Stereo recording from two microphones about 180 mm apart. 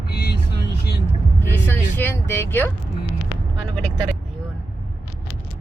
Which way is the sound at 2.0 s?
10° left (ahead or behind).